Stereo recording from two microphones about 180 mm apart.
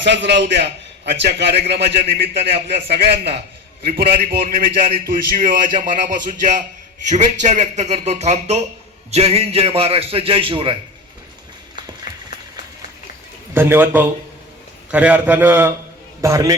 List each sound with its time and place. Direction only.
0.0 s a man's voice: 75° right (ahead or behind)
2.5 s a man's voice: 35° right (ahead or behind)
2.9 s a man's voice: 65° right (ahead or behind); by 10.8 s 30° right (ahead or behind)
13.5 s a man's voice: 10° right (ahead or behind)